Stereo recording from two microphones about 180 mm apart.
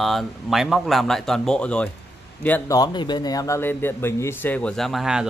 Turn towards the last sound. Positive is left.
turn(degrees=0)  # may be behind; listen again after turning